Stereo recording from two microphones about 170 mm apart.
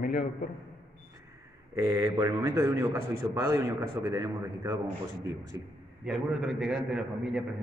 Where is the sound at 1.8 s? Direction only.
20° right (ahead or behind).